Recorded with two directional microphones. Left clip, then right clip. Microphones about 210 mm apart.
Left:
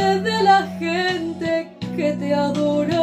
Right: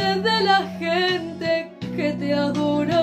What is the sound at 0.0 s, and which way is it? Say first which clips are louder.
Music: left 3 dB; 20° right (ahead or behind).